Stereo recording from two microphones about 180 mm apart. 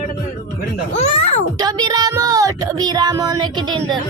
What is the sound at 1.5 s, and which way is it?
Speech, 25° right (ahead or behind).